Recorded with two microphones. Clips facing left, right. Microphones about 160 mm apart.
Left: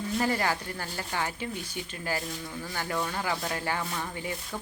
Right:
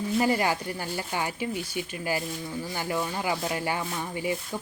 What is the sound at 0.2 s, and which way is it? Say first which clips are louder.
Speech: right 3 dB; 15° right (ahead or behind).